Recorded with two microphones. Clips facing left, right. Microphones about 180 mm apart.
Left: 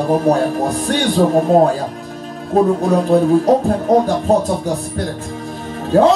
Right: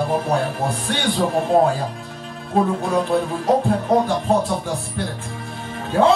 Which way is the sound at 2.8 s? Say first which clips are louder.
Left 7 dB; 40° left (ahead or behind).